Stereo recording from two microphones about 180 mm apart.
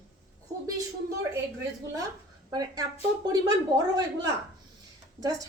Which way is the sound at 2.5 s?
20° right (ahead or behind).